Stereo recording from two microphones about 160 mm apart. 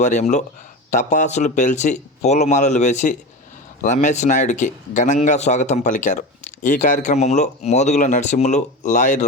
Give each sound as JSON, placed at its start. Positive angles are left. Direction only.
{"t": 0.0, "sound": "a man's voice", "side_deg": 45}